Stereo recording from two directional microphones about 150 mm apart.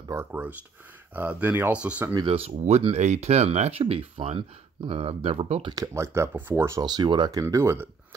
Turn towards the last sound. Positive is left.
turn(degrees=-20)  # may be behind; listen again after turning